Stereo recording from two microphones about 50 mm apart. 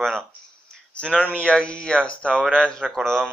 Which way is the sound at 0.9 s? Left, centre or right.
Centre.